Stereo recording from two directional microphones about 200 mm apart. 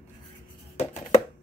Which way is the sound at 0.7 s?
30° left (ahead or behind).